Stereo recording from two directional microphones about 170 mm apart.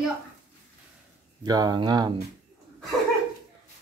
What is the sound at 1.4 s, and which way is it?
Speech, 25° right (ahead or behind).